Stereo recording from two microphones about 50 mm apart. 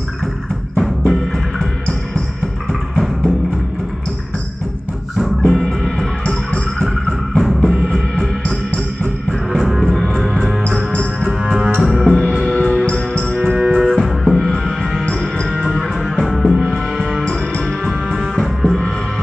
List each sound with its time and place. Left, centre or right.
0.7 s drum: centre
5.5 s music: centre
8.5 s music: centre
9.7 s music: centre
10.9 s music: left
11.8 s music: centre
12.6 s music: left
13.5 s music: right
13.8 s music: centre
18.3 s music: centre